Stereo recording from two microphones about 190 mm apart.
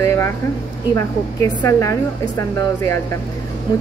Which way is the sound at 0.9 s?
15° left (ahead or behind).